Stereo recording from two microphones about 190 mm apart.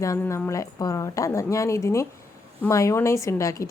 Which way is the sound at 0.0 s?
15° left (ahead or behind).